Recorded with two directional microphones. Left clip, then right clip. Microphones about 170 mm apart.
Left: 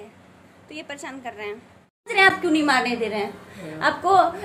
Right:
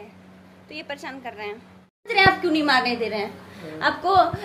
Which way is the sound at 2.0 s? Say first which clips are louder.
Even; 15° left (ahead or behind).